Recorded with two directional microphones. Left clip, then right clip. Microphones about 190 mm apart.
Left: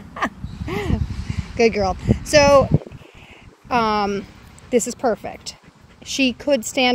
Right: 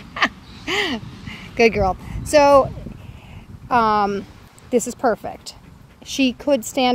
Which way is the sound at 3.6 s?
Centre (ahead or behind).